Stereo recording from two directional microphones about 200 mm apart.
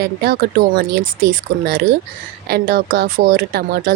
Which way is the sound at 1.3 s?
55° right (ahead or behind).